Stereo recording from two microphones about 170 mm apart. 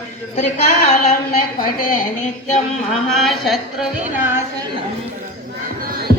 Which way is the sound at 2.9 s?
Centre (ahead or behind).